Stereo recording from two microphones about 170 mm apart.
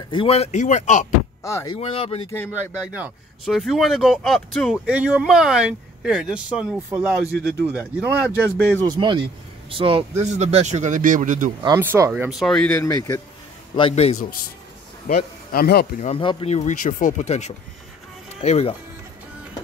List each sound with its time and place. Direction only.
0.1 s speech: 35° left (ahead or behind)
1.4 s speech: 15° left (ahead or behind)
1.8 s speech: 35° left (ahead or behind)
2.9 s speech: 5° right (ahead or behind)
8.8 s speech: 25° right (ahead or behind); by 11.5 s 50° right (ahead or behind)
11.6 s speech: 15° right (ahead or behind)
12.3 s speech: centre (ahead or behind); by 13.2 s 15° left (ahead or behind)
13.7 s speech: 35° left (ahead or behind)
15.0 s speech: 60° left (ahead or behind)
16.0 s speech: 35° left (ahead or behind)